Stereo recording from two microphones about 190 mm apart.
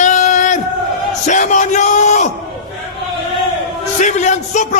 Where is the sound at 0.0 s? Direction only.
40° left (ahead or behind).